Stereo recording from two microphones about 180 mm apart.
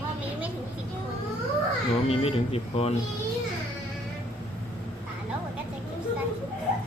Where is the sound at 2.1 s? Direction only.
35° left (ahead or behind).